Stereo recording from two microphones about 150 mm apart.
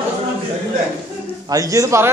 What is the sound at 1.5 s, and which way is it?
Speech, 20° right (ahead or behind).